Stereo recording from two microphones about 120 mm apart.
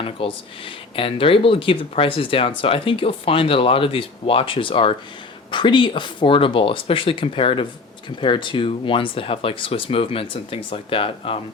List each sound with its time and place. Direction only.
0.0 s speech: 50° left (ahead or behind)